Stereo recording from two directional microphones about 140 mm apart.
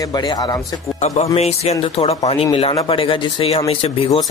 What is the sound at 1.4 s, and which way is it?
Speech, 50° left (ahead or behind).